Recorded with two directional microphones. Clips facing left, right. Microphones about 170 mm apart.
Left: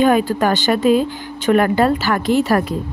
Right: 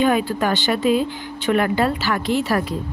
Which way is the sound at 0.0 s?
45° left (ahead or behind).